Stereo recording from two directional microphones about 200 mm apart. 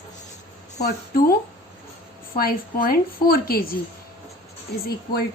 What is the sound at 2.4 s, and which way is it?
Speech, 45° left (ahead or behind).